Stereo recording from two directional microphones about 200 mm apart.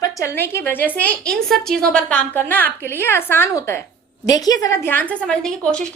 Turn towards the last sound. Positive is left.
turn(degrees=5)  # may be behind; listen again after turning